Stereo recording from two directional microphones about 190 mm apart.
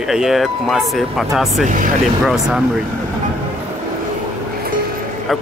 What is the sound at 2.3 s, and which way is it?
Speech, centre (ahead or behind).